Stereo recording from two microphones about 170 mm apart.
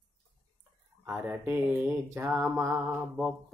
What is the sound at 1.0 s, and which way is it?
Music, 15° right (ahead or behind).